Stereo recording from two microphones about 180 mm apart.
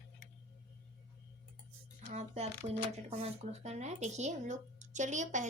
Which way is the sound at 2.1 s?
35° right (ahead or behind).